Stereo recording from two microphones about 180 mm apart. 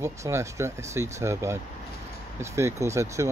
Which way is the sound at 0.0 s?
15° right (ahead or behind).